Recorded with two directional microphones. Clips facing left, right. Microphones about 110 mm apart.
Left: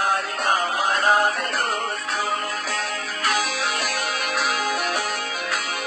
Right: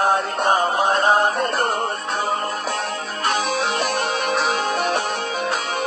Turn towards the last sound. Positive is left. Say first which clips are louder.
# right 4 dB
turn(degrees=-25)  # may be behind; listen again after turning